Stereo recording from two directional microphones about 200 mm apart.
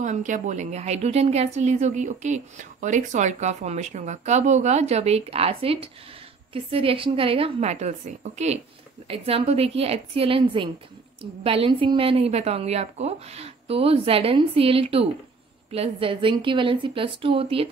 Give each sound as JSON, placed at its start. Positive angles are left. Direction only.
{"t": 0.0, "sound": "a woman's voice", "side_deg": -40}